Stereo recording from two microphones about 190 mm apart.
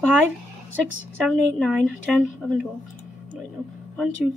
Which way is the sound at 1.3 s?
5° right (ahead or behind).